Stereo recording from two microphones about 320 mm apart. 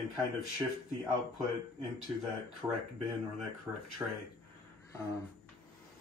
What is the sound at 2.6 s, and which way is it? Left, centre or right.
Speech, centre.